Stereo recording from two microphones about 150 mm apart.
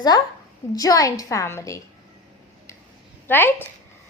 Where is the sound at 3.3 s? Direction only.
15° left (ahead or behind).